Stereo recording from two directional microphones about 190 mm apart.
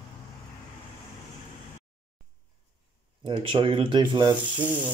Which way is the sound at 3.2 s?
25° right (ahead or behind).